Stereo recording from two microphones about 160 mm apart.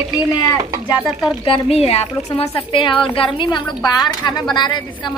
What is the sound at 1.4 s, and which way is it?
A woman's voice, 35° left (ahead or behind).